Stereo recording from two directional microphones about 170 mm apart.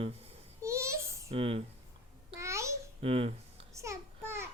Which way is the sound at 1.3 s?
35° right (ahead or behind).